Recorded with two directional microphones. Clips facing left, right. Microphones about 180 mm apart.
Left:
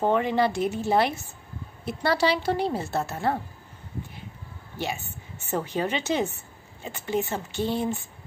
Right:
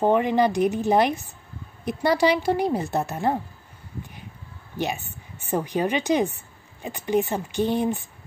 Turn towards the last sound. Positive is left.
turn(degrees=-15)  # may be behind; listen again after turning